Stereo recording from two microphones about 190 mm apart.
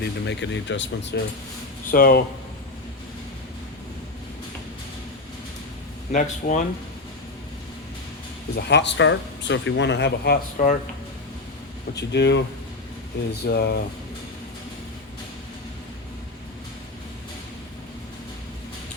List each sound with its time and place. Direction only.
0.0 s speech: 70° left (ahead or behind)
1.9 s speech: 50° left (ahead or behind)
6.1 s speech: 40° left (ahead or behind)
8.5 s speech: 65° left (ahead or behind)
10.6 s speech: 45° left (ahead or behind)
11.9 s speech: 65° left (ahead or behind)
13.4 s speech: 60° left (ahead or behind)